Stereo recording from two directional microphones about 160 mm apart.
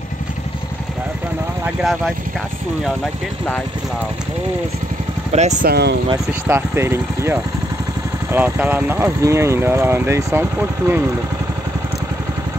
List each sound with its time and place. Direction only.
1.8 s speech: centre (ahead or behind)
5.3 s speech: 45° right (ahead or behind)
5.7 s speech: 90° right
6.4 s speech: 15° right (ahead or behind)